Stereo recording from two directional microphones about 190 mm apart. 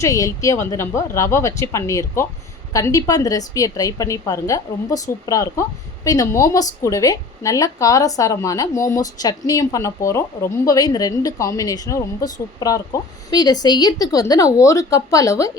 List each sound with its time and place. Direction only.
0.0 s a woman's voice: 15° left (ahead or behind)